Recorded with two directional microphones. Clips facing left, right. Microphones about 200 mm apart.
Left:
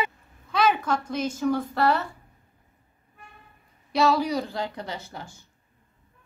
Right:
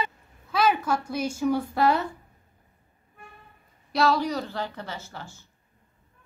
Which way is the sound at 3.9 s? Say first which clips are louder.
Left 1 dB; 5° left (ahead or behind).